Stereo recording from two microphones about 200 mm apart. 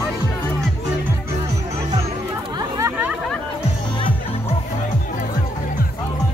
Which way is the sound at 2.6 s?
15° right (ahead or behind).